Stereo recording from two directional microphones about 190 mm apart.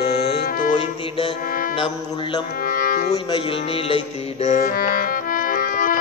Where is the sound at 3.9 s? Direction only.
35° left (ahead or behind).